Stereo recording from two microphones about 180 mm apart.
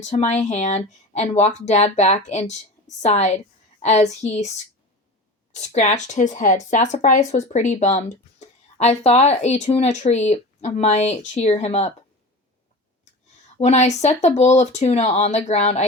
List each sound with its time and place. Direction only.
0.0 s speech: 40° left (ahead or behind)
13.6 s speech: 40° left (ahead or behind)